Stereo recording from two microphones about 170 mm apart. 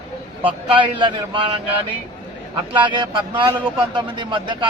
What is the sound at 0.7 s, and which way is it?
Speech, 30° right (ahead or behind).